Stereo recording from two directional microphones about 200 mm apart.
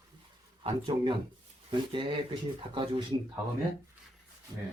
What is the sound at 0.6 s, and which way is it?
Speech, 25° right (ahead or behind).